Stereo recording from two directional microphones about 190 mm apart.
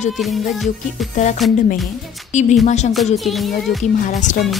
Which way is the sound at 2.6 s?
40° left (ahead or behind).